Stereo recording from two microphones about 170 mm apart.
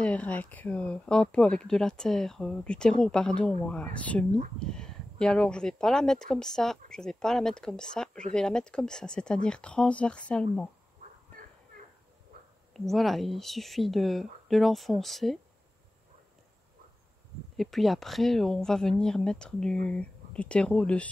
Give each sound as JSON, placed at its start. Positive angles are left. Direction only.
{"t": 0.0, "sound": "speech", "side_deg": 10}
{"t": 11.3, "sound": "dog", "side_deg": 10}
{"t": 12.7, "sound": "speech", "side_deg": 0}
{"t": 17.6, "sound": "speech", "side_deg": 0}